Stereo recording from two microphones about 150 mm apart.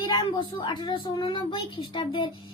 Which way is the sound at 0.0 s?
30° left (ahead or behind).